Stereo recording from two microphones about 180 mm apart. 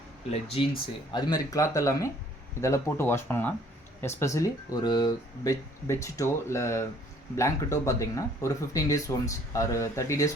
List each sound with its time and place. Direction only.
0.3 s speech: 35° left (ahead or behind)
1.1 s speech: 20° left (ahead or behind)